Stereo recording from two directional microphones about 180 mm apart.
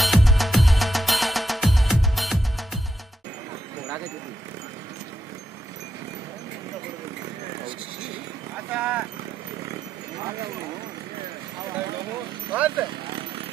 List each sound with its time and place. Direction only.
0.0 s music: centre (ahead or behind)
8.7 s vehicle: 5° right (ahead or behind)
12.5 s a sound: 5° right (ahead or behind)